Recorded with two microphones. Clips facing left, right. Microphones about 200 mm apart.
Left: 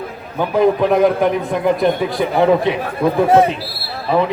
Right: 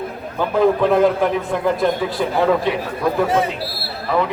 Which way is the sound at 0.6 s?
15° left (ahead or behind).